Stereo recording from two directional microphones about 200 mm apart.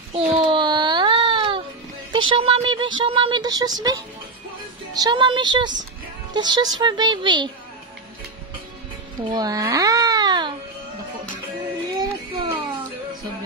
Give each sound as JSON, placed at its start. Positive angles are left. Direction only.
{"t": 0.1, "sound": "child singing", "side_deg": -30}
{"t": 2.1, "sound": "speech", "side_deg": -25}
{"t": 4.9, "sound": "speech", "side_deg": -20}
{"t": 9.3, "sound": "babbling", "side_deg": -20}
{"t": 11.9, "sound": "child singing", "side_deg": -20}